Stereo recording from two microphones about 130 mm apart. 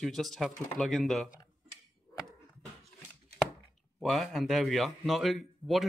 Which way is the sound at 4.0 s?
Centre (ahead or behind).